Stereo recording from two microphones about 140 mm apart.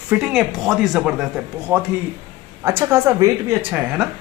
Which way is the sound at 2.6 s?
20° right (ahead or behind).